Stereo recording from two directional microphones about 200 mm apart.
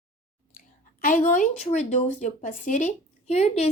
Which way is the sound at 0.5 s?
45° left (ahead or behind).